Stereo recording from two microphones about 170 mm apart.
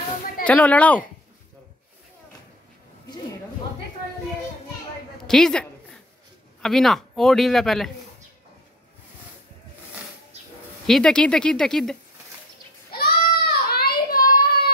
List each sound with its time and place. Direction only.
0.5 s a woman's voice: 10° left (ahead or behind)
5.1 s a woman's voice: 5° left (ahead or behind)
10.9 s a man's voice: 5° left (ahead or behind)
12.9 s child singing: 65° left (ahead or behind)